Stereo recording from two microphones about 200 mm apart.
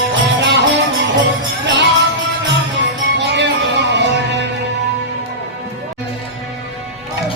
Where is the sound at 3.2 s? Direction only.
60° right (ahead or behind).